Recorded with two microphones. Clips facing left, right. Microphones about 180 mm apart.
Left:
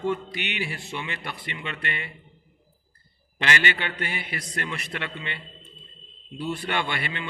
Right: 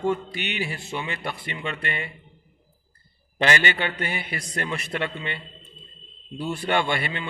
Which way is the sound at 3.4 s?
45° right (ahead or behind).